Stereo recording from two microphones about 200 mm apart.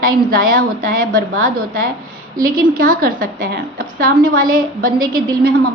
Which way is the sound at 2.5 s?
45° right (ahead or behind).